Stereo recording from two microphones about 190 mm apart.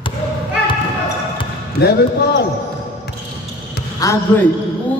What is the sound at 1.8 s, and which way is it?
Speech, 55° left (ahead or behind).